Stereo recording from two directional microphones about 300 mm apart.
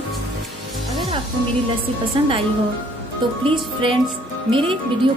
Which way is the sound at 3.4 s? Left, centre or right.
Centre.